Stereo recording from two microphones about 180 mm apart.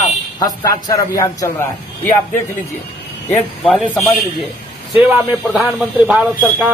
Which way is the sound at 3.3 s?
5° left (ahead or behind).